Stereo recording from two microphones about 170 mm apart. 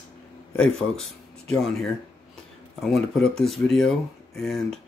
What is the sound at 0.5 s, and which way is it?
Speech, 5° left (ahead or behind).